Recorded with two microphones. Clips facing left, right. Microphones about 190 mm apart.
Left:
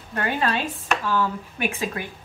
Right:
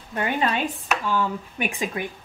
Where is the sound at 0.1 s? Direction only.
15° right (ahead or behind).